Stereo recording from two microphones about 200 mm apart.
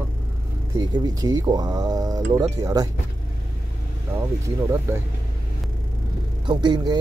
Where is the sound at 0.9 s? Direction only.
20° right (ahead or behind).